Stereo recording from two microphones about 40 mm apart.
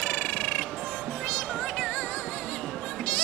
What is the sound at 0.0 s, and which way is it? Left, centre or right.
Music, left.